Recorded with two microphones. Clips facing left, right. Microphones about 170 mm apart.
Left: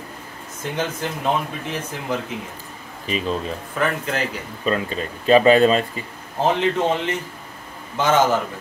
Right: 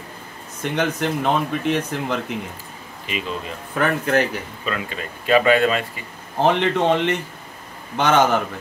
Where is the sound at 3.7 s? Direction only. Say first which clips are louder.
Right 5 dB; 60° right (ahead or behind).